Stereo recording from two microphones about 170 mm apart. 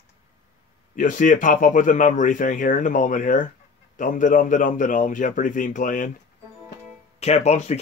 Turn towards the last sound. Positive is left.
turn(degrees=40)  # may be behind; listen again after turning